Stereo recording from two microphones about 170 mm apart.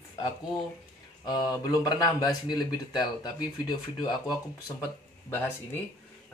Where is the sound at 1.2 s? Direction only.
25° left (ahead or behind).